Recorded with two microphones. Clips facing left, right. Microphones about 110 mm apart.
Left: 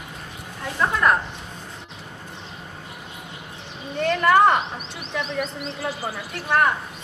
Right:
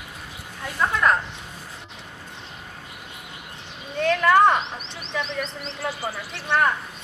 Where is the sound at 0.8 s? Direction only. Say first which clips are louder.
Left 1 dB; 5° left (ahead or behind).